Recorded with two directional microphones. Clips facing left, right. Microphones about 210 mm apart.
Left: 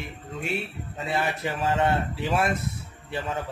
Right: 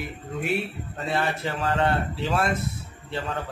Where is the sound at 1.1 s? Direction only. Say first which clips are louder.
Right 1 dB; 20° left (ahead or behind).